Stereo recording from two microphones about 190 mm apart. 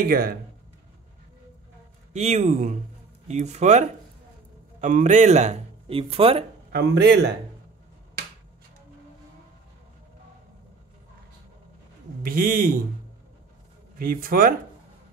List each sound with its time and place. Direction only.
0.0 s speech: 50° right (ahead or behind)
2.1 s speech: 35° right (ahead or behind)
6.7 s speech: 60° right (ahead or behind)
12.2 s speech: 50° right (ahead or behind)
13.9 s speech: 50° right (ahead or behind)